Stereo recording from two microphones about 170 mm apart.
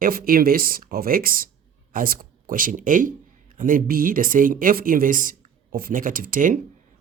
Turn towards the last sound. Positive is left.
turn(degrees=-55)  # may be behind; listen again after turning